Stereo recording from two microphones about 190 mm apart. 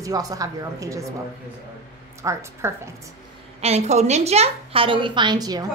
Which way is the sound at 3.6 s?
35° right (ahead or behind).